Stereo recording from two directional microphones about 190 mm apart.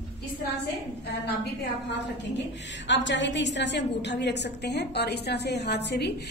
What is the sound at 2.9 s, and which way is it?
A woman's voice, 70° left (ahead or behind).